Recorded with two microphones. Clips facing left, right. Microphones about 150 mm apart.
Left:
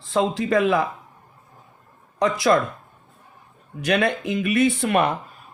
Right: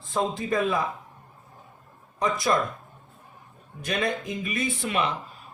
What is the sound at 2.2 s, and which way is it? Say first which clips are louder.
Speech: left 6 dB; 90° left.